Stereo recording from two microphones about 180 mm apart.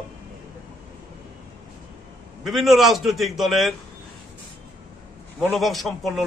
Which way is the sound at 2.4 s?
Centre (ahead or behind).